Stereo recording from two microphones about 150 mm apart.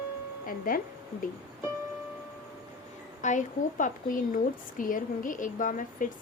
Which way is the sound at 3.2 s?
55° left (ahead or behind).